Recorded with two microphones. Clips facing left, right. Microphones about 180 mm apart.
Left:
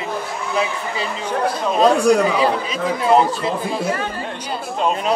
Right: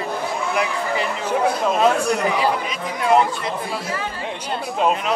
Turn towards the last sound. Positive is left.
turn(degrees=30)  # may be behind; listen again after turning